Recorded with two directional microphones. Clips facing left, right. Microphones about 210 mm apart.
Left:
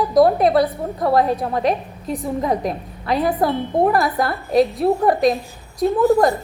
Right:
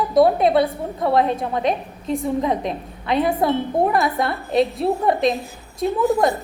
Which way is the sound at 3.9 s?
Centre (ahead or behind).